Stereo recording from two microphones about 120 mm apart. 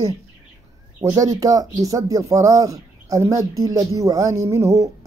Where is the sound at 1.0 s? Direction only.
30° right (ahead or behind).